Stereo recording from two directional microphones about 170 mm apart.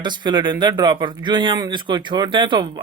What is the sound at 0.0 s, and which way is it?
Speech, 25° right (ahead or behind).